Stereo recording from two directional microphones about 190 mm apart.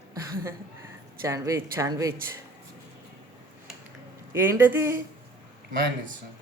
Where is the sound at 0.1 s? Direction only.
20° right (ahead or behind).